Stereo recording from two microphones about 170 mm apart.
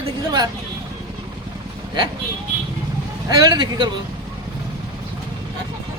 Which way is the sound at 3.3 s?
25° right (ahead or behind).